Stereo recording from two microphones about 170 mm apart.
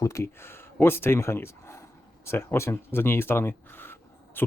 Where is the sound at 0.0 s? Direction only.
15° left (ahead or behind).